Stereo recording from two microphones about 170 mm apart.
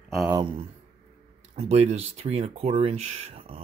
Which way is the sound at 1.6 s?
40° right (ahead or behind).